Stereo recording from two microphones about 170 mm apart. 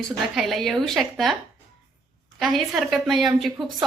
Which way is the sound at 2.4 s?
Centre (ahead or behind).